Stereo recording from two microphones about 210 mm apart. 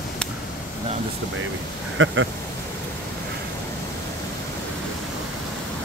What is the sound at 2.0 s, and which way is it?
Speech, 65° right (ahead or behind).